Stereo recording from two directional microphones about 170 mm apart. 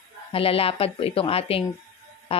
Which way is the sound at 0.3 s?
35° left (ahead or behind).